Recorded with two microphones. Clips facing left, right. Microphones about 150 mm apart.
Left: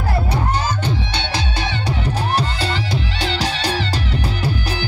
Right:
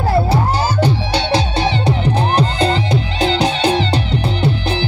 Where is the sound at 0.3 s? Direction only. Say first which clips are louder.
Right 5 dB; 35° right (ahead or behind).